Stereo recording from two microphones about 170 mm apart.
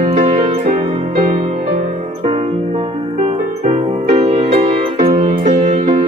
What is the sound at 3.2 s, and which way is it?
Music, 35° right (ahead or behind).